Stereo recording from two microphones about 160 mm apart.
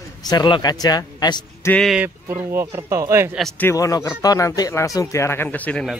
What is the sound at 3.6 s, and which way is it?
Speech, 20° left (ahead or behind).